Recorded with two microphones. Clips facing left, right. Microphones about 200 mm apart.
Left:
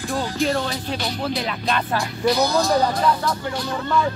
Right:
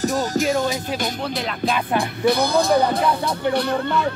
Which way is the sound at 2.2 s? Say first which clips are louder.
Right 1 dB; 55° right (ahead or behind).